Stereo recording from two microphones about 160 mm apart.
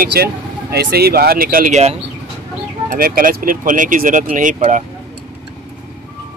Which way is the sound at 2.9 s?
65° right (ahead or behind).